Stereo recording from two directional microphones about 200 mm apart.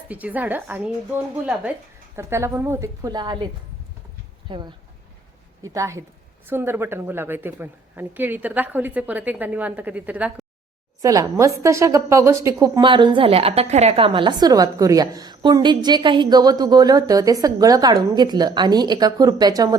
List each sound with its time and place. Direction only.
0.1 s a woman's voice: 10° right (ahead or behind)
2.1 s a woman's voice: 15° right (ahead or behind)
4.4 s a woman's voice: 25° right (ahead or behind); by 10.4 s 5° right (ahead or behind)
11.0 s a woman's voice: 15° right (ahead or behind)